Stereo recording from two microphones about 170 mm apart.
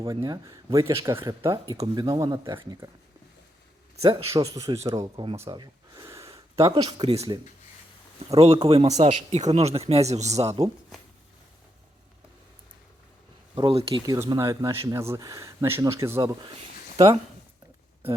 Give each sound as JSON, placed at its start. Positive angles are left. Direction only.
{"t": 0.0, "sound": "speech", "side_deg": -20}
{"t": 4.0, "sound": "speech", "side_deg": -35}
{"t": 4.3, "sound": "speech", "side_deg": -20}
{"t": 5.4, "sound": "gasp", "side_deg": -20}
{"t": 7.1, "sound": "speech", "side_deg": -40}
{"t": 13.6, "sound": "speech", "side_deg": -30}
{"t": 14.2, "sound": "speech", "side_deg": -15}